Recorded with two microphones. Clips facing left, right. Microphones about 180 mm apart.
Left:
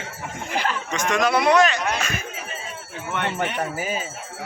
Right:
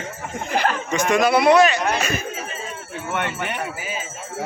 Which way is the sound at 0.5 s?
45° right (ahead or behind).